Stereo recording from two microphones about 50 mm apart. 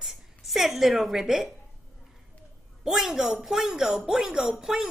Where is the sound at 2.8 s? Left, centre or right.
Centre.